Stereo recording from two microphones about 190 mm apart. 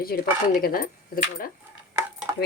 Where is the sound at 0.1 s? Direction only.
50° left (ahead or behind).